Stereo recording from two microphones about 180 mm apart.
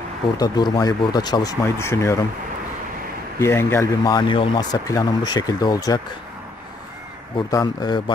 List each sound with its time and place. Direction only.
0.4 s speech: 20° left (ahead or behind)
3.3 s speech: 15° left (ahead or behind)
7.3 s speech: 20° left (ahead or behind)